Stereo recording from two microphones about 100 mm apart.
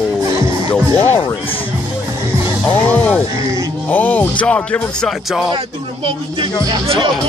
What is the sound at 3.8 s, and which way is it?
Music, 15° left (ahead or behind).